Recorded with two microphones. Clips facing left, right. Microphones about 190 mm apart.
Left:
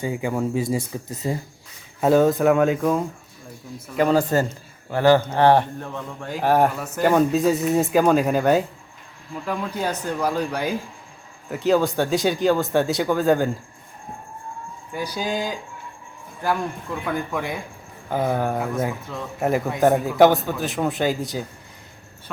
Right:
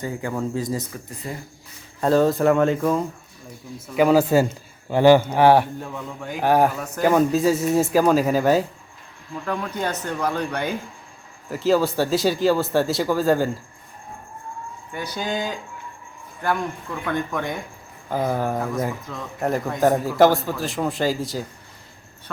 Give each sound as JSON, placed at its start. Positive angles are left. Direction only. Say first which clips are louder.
{"t": 0.0, "sound": "speech", "louder": "left 2 dB", "side_deg": 15}
{"t": 1.1, "sound": "speech", "louder": "left 7 dB", "side_deg": 20}
{"t": 2.0, "sound": "a man's voice", "louder": "left 1 dB", "side_deg": 5}
{"t": 9.3, "sound": "speech", "louder": "even", "side_deg": 10}
{"t": 11.4, "sound": "a man's voice", "louder": "even", "side_deg": 0}
{"t": 14.9, "sound": "a man's voice", "louder": "left 1 dB", "side_deg": 10}